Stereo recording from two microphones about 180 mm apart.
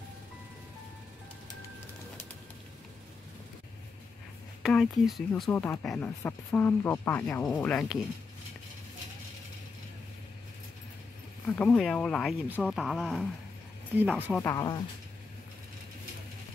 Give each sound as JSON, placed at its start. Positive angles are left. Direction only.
{"t": 4.6, "sound": "speech", "side_deg": 0}
{"t": 5.4, "sound": "speech", "side_deg": 10}
{"t": 11.4, "sound": "speech", "side_deg": 10}
{"t": 13.9, "sound": "speech", "side_deg": -10}
{"t": 14.3, "sound": "speech", "side_deg": 15}